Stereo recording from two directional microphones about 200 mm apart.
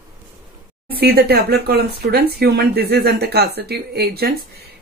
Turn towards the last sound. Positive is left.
turn(degrees=-50)  # may be behind; listen again after turning